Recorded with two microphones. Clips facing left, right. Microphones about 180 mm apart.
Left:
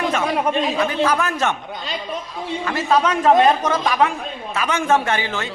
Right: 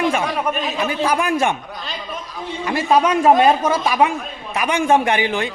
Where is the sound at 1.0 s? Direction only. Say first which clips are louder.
Right 2 dB; 10° right (ahead or behind).